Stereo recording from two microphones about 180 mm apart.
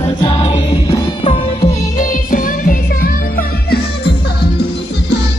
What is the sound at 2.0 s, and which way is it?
Music, 50° left (ahead or behind).